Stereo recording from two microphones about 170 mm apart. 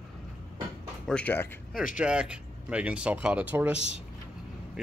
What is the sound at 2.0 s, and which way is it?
Speech, 5° right (ahead or behind).